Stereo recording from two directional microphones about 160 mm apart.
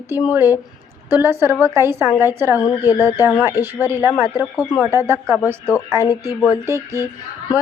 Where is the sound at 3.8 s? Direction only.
15° right (ahead or behind).